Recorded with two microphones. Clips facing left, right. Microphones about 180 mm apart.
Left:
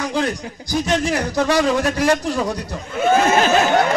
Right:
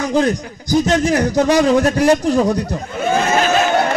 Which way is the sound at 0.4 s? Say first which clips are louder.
Right 6 dB; 45° right (ahead or behind).